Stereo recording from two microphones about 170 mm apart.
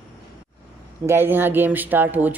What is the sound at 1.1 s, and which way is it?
Speech, 10° right (ahead or behind).